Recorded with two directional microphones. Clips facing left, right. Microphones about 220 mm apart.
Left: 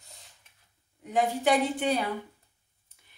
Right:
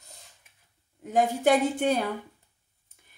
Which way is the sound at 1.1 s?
45° right (ahead or behind).